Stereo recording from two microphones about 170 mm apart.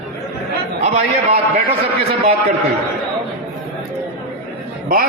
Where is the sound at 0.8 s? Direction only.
40° right (ahead or behind).